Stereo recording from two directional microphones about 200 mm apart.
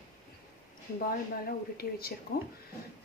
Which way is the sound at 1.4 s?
50° left (ahead or behind).